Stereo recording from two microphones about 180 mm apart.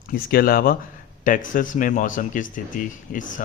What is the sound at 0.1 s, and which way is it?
Speech, 55° left (ahead or behind).